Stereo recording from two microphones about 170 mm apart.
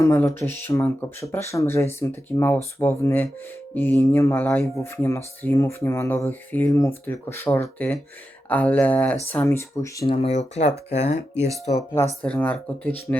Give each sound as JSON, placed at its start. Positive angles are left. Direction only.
{"t": 0.0, "sound": "speech", "side_deg": 15}
{"t": 10.1, "sound": "speech", "side_deg": 35}
{"t": 12.2, "sound": "speech", "side_deg": 10}